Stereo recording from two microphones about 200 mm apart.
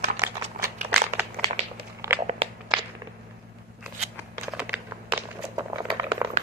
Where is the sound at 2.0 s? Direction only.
15° right (ahead or behind).